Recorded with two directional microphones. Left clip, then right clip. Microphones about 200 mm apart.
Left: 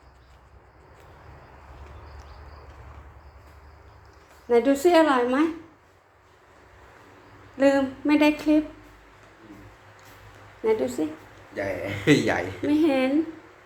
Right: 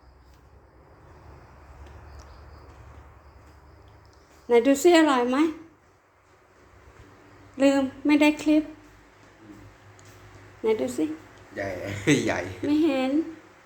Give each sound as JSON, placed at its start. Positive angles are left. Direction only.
{"t": 4.4, "sound": "a woman's voice", "side_deg": -20}
{"t": 7.5, "sound": "a sound", "side_deg": -15}
{"t": 10.6, "sound": "speech", "side_deg": -15}
{"t": 11.5, "sound": "a woman's voice", "side_deg": 0}